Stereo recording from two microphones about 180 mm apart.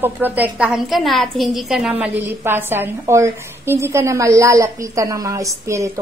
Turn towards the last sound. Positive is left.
turn(degrees=-15)  # may be behind; listen again after turning